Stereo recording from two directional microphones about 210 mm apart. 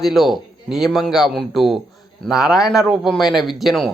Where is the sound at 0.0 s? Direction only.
Centre (ahead or behind).